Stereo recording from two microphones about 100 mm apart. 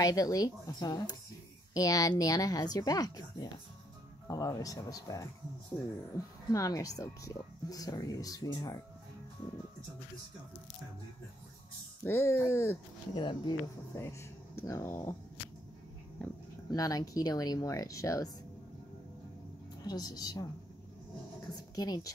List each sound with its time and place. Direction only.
0.0 s speech: 35° left (ahead or behind)
12.0 s speech: 25° left (ahead or behind)
13.1 s speech: 55° left (ahead or behind)
13.9 s speech: 30° left (ahead or behind)
16.7 s speech: 35° left (ahead or behind)
19.8 s speech: 40° left (ahead or behind)
21.7 s speech: 40° left (ahead or behind)